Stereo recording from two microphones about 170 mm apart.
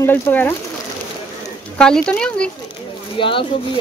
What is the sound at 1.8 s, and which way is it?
Speech, 5° left (ahead or behind).